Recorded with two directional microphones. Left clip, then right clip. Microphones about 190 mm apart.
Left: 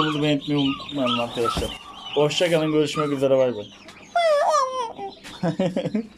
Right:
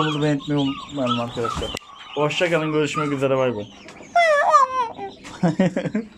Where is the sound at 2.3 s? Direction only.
35° left (ahead or behind).